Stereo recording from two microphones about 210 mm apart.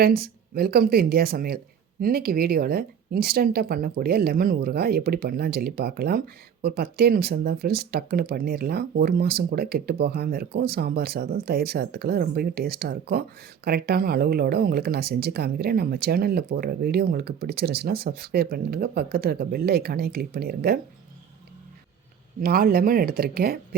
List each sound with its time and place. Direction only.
0.0 s speech: 45° right (ahead or behind)
22.4 s speech: 45° right (ahead or behind)